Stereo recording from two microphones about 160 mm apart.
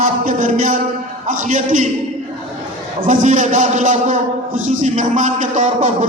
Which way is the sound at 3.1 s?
50° right (ahead or behind).